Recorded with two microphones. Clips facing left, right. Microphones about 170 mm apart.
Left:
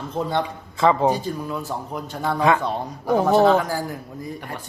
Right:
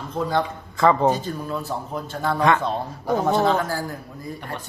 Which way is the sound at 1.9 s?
15° left (ahead or behind).